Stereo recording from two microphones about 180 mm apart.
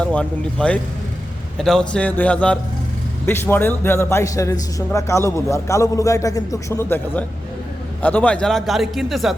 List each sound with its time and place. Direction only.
0.0 s a man's voice: 5° left (ahead or behind)